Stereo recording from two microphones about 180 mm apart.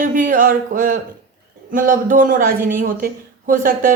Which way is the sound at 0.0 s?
50° right (ahead or behind).